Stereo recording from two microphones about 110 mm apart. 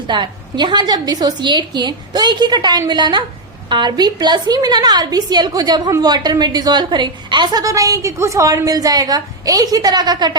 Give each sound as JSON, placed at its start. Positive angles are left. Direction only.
{"t": 0.1, "sound": "a woman's voice", "side_deg": -45}